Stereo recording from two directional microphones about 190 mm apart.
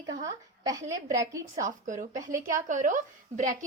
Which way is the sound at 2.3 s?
45° right (ahead or behind).